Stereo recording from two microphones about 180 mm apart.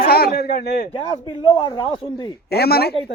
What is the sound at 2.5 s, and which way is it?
Speech, 60° left (ahead or behind).